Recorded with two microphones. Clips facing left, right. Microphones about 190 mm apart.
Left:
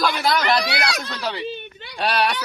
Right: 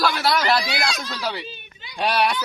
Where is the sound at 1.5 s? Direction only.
65° left (ahead or behind).